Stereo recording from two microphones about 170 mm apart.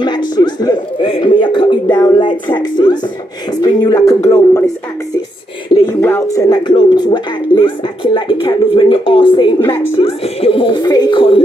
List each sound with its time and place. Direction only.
0.0 s speech: 25° left (ahead or behind)
5.9 s speech: 15° left (ahead or behind); by 9.5 s 30° left (ahead or behind)
9.6 s a woman's voice: 15° left (ahead or behind)
9.9 s speech: 35° left (ahead or behind)